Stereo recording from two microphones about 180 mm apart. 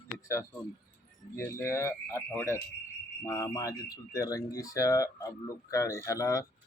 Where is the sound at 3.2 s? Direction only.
20° left (ahead or behind).